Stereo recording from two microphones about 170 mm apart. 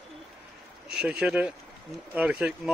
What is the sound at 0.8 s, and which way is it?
Speech, 5° right (ahead or behind).